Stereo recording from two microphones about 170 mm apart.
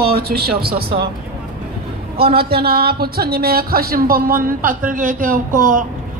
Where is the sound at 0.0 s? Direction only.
65° right (ahead or behind).